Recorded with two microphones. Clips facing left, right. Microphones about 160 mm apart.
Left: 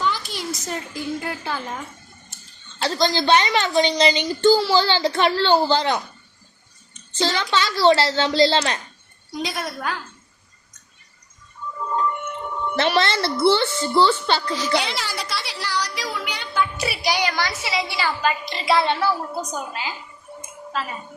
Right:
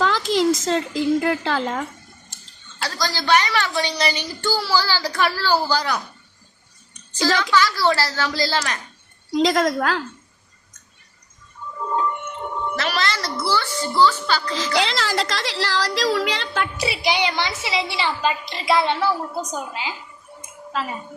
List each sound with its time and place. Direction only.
0.0 s a woman's voice: 90° right
2.7 s a woman's voice: 25° left (ahead or behind)
6.9 s a sound: 25° left (ahead or behind)
7.3 s a woman's voice: 90° right
7.5 s a woman's voice: 20° left (ahead or behind)
9.3 s a woman's voice: 90° right
12.7 s a woman's voice: 25° left (ahead or behind)
14.5 s a woman's voice: 90° right
16.9 s a woman's voice: 20° right (ahead or behind)